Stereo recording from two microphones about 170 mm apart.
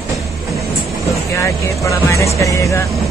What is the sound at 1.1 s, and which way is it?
Speech, 20° left (ahead or behind).